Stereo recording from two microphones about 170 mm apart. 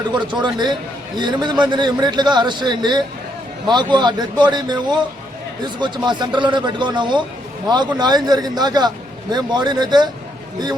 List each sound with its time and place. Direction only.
0.1 s a man's voice: 25° right (ahead or behind)